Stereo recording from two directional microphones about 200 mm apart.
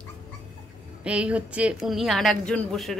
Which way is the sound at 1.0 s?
5° right (ahead or behind).